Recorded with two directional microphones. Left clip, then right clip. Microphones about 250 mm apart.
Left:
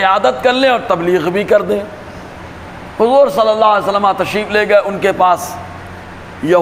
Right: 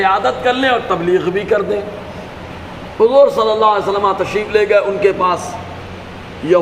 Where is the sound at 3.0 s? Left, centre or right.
Left.